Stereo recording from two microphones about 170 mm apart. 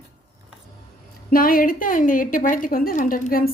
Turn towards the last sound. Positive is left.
turn(degrees=60)  # may be behind; listen again after turning